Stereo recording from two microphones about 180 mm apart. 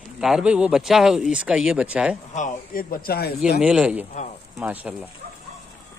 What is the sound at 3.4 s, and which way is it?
Speech, 5° right (ahead or behind).